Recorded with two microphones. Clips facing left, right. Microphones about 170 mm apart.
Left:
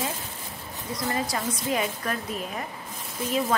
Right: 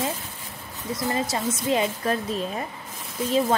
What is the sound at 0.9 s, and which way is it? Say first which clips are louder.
A woman's voice: right 3 dB; 25° right (ahead or behind).